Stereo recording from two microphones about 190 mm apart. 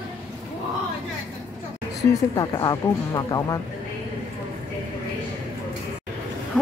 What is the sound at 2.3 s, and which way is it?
Speech, 20° left (ahead or behind).